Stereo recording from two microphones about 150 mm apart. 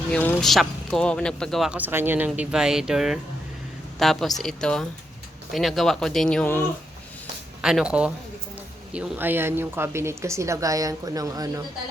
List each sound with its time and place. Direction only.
0.1 s speech: 10° left (ahead or behind)
0.4 s speech: centre (ahead or behind)
7.6 s speech: 5° right (ahead or behind); by 11.6 s 25° right (ahead or behind)